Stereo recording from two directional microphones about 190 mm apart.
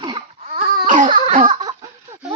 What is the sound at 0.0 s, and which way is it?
Babbling, 25° right (ahead or behind).